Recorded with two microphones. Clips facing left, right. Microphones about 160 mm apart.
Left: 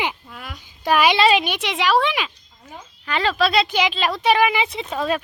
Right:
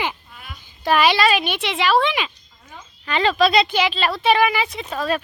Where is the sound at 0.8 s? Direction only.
10° left (ahead or behind).